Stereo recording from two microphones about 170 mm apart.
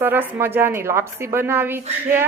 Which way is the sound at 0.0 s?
10° right (ahead or behind).